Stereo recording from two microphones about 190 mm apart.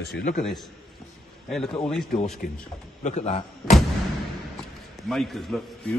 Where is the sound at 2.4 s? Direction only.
45° left (ahead or behind).